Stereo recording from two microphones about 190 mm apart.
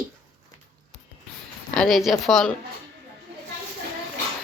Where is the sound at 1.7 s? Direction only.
Centre (ahead or behind).